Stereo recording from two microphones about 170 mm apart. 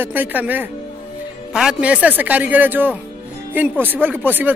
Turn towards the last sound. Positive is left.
turn(degrees=-10)  # may be behind; listen again after turning